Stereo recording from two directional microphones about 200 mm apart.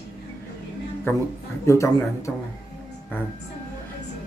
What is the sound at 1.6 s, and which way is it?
Speech, 15° left (ahead or behind).